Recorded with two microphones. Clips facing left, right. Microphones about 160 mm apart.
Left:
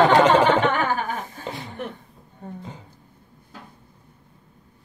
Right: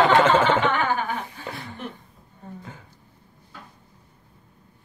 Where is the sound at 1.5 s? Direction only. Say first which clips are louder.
Left 2 dB; 20° left (ahead or behind).